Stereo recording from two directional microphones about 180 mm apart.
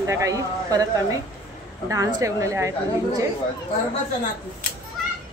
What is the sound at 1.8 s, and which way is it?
Speech, 15° right (ahead or behind).